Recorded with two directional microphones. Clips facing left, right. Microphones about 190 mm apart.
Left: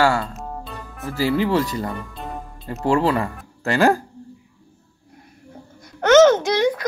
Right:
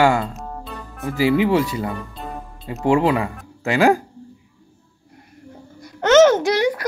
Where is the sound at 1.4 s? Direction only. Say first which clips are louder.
Right 2 dB; 10° right (ahead or behind).